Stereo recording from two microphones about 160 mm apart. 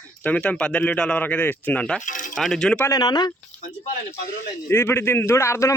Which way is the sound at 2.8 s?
25° left (ahead or behind).